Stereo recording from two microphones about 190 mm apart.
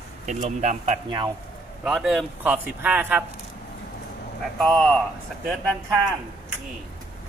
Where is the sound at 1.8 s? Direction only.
Centre (ahead or behind).